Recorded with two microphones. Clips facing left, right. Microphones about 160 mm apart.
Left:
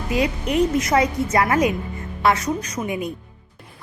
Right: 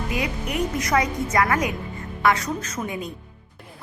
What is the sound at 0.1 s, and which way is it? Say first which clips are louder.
A woman's voice: left 9 dB; 25° left (ahead or behind).